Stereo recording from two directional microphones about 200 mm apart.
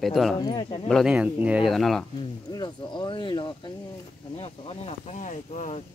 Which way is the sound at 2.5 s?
20° left (ahead or behind).